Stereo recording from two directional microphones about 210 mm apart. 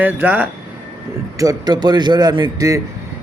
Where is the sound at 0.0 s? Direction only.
10° right (ahead or behind).